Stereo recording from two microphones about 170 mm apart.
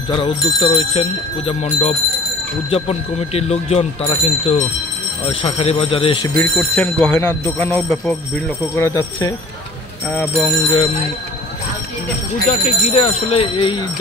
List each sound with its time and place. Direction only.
0.1 s speech: 30° left (ahead or behind)
6.3 s speech: 10° left (ahead or behind)
12.4 s speech: 40° left (ahead or behind)